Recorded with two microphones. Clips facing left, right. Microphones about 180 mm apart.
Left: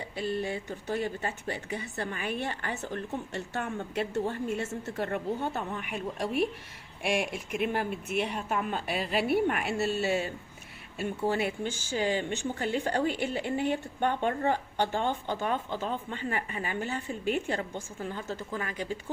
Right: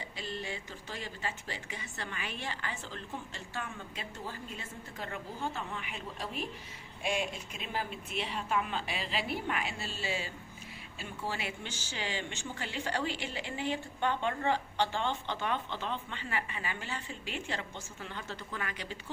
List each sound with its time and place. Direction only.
0.2 s speech: 55° left (ahead or behind)
4.3 s a woman's voice: 70° left (ahead or behind)
4.9 s speech: 55° left (ahead or behind)
7.1 s a woman's voice: 60° left (ahead or behind); by 19.1 s 45° left (ahead or behind)